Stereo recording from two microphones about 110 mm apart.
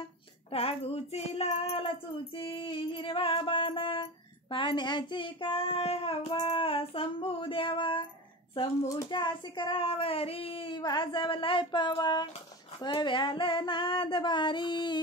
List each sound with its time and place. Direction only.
0.5 s child singing: 60° left (ahead or behind)
2.3 s music: 50° left (ahead or behind)
6.3 s child singing: 55° left (ahead or behind)
8.8 s speech: 30° left (ahead or behind)
9.1 s music: 45° left (ahead or behind)